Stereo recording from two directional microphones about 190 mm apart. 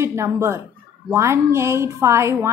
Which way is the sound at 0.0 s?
15° right (ahead or behind).